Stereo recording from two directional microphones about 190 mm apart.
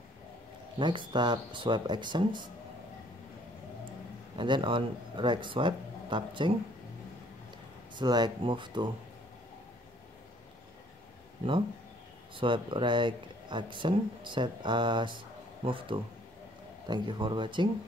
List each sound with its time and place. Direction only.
0.7 s speech: 25° right (ahead or behind)
4.4 s speech: 25° right (ahead or behind)
7.9 s speech: 20° right (ahead or behind)
12.4 s speech: 25° right (ahead or behind)